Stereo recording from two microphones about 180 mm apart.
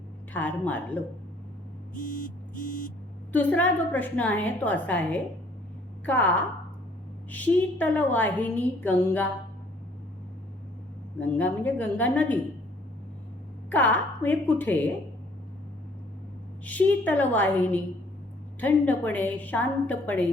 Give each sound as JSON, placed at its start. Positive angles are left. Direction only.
{"t": 0.3, "sound": "a woman's voice", "side_deg": 10}
{"t": 2.0, "sound": "vehicle", "side_deg": 45}
{"t": 3.3, "sound": "a woman's voice", "side_deg": 10}
{"t": 11.2, "sound": "a woman's voice", "side_deg": 10}
{"t": 13.7, "sound": "a woman's voice", "side_deg": 10}
{"t": 16.6, "sound": "a woman's voice", "side_deg": 10}